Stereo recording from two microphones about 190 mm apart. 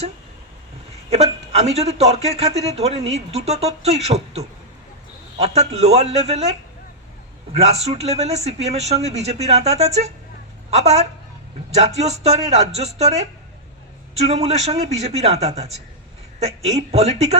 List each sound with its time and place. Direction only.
1.1 s a man's voice: 35° right (ahead or behind)
7.5 s a man's voice: 35° right (ahead or behind)